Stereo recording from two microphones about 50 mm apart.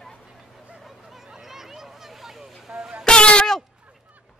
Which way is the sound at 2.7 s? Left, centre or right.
Centre.